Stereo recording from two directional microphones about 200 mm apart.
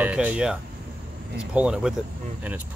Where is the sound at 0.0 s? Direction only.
5° right (ahead or behind).